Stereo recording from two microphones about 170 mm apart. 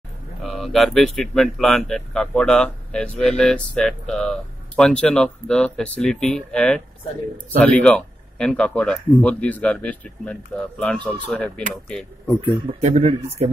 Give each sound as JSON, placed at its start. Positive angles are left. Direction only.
{"t": 0.4, "sound": "speech", "side_deg": 0}
{"t": 12.8, "sound": "speech", "side_deg": -40}